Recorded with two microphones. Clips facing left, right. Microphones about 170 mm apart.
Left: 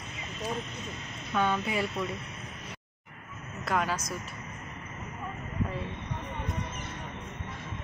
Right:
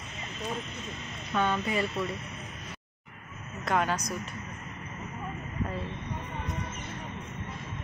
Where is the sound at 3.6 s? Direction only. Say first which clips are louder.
Right 2 dB; 5° left (ahead or behind).